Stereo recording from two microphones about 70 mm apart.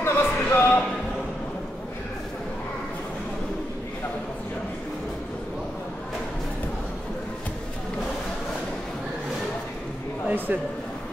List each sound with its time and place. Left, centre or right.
0.0 s music: left
10.2 s speech: right